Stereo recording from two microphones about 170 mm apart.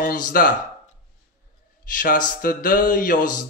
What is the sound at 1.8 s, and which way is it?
Speech, 55° left (ahead or behind).